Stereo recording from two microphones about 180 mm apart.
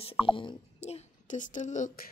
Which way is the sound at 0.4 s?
30° left (ahead or behind).